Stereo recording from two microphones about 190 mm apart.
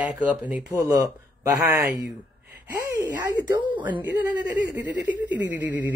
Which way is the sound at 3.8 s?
10° right (ahead or behind).